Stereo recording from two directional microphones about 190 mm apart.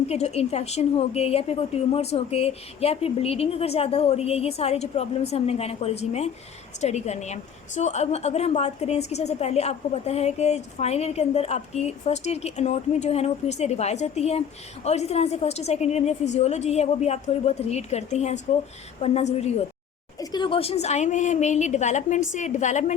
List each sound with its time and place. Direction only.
0.1 s a woman's voice: 35° left (ahead or behind)
20.1 s a woman's voice: 25° left (ahead or behind); by 23.0 s 40° left (ahead or behind)